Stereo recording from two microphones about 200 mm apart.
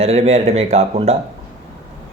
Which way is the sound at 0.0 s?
30° right (ahead or behind).